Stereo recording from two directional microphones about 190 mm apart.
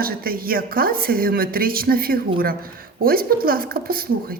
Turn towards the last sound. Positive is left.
turn(degrees=-50)  # may be behind; listen again after turning